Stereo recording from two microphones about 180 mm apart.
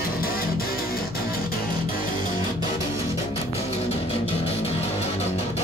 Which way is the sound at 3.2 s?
35° left (ahead or behind).